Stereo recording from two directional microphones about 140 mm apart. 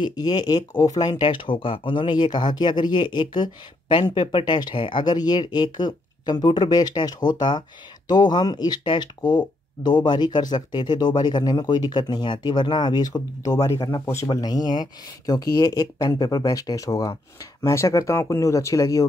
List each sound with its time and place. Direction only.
0.0 s speech: 30° left (ahead or behind)